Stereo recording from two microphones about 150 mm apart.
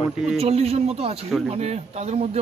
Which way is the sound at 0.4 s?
40° right (ahead or behind).